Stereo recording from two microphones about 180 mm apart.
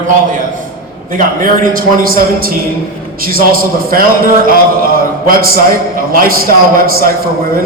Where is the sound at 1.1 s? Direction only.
50° right (ahead or behind).